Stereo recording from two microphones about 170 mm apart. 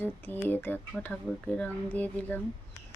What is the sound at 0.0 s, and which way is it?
Speech, 10° left (ahead or behind).